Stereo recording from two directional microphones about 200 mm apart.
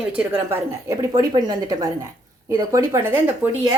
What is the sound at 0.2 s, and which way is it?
A woman's voice, 10° right (ahead or behind).